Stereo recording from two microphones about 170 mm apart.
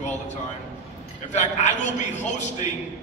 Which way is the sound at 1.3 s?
45° left (ahead or behind).